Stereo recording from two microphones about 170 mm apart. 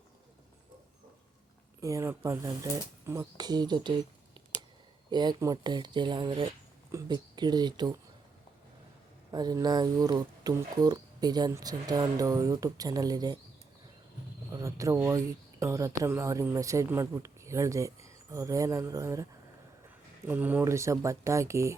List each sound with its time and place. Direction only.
1.8 s speech: 20° right (ahead or behind)
5.1 s speech: 25° right (ahead or behind)
9.3 s speech: 25° right (ahead or behind)
14.5 s speech: 20° right (ahead or behind)